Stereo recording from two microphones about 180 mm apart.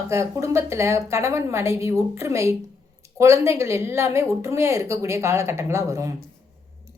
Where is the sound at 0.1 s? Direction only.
15° right (ahead or behind).